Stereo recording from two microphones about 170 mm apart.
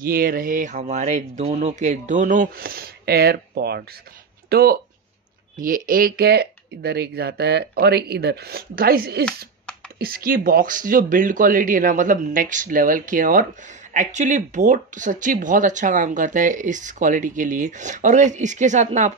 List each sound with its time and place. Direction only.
0.0 s speech: 60° right (ahead or behind); by 19.1 s 45° right (ahead or behind)